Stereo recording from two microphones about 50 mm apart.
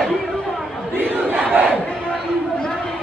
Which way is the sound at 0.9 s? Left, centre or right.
Right.